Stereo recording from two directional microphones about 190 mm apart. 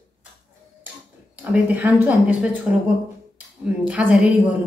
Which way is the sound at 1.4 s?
10° right (ahead or behind).